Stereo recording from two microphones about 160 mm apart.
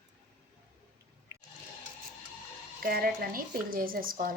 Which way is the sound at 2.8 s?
65° right (ahead or behind).